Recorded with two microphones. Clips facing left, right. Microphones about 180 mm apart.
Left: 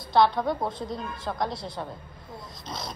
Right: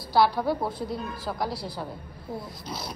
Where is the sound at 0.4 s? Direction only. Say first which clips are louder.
Right 1 dB; 5° right (ahead or behind).